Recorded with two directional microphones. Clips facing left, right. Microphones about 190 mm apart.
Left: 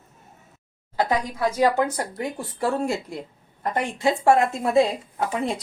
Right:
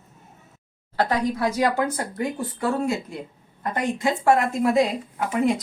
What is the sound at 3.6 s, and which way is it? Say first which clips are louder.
A woman's voice: right 1 dB; 30° left (ahead or behind).